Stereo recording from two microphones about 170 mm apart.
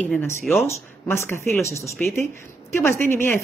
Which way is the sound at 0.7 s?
15° left (ahead or behind).